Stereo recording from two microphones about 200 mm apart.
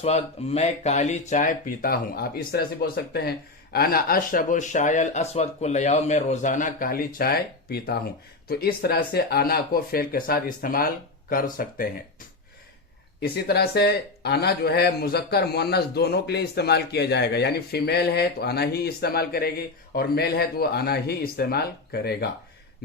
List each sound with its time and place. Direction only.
0.0 s speech: 30° left (ahead or behind)
13.2 s speech: 55° left (ahead or behind)